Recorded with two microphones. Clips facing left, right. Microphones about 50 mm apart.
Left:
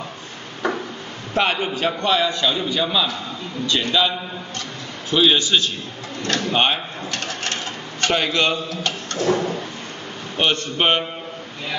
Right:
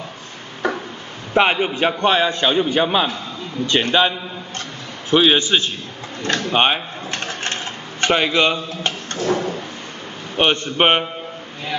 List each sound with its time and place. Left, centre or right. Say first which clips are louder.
1.3 s a man's voice: right 4 dB; right
5.1 s a man's voice: right 2 dB; right
6.2 s a sound: right 2 dB; right
8.0 s a man's voice: right 3 dB; right
9.2 s drawer open or close: even; centre
10.3 s a man's voice: right 3 dB; right